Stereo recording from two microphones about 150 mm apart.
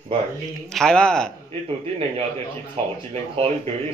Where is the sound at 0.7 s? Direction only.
5° left (ahead or behind).